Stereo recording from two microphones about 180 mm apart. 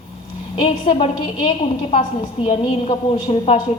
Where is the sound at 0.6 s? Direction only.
30° left (ahead or behind).